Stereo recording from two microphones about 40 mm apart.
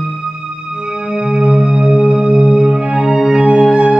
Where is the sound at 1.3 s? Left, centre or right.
Centre.